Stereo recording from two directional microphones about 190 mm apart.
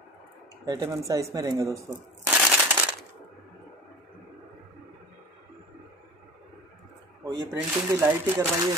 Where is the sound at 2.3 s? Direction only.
5° right (ahead or behind).